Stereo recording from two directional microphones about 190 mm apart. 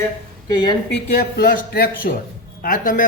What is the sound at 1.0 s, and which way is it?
A man's voice, 45° left (ahead or behind).